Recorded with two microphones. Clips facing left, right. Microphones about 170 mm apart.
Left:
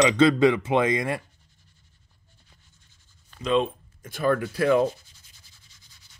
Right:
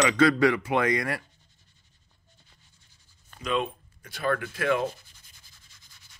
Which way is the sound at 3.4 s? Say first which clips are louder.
Left 5 dB; 30° left (ahead or behind).